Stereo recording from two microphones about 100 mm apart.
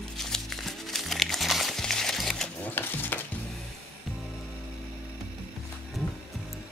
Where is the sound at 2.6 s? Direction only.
20° left (ahead or behind).